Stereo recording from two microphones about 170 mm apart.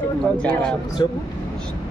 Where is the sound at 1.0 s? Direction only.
25° left (ahead or behind).